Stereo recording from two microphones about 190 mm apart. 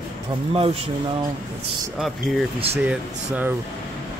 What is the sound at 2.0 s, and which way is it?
Speech, centre (ahead or behind).